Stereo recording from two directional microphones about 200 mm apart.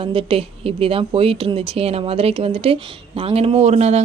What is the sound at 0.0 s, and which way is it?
A man's voice, 25° right (ahead or behind).